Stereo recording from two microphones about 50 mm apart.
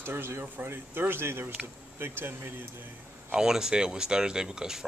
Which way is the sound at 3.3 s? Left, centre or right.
Centre.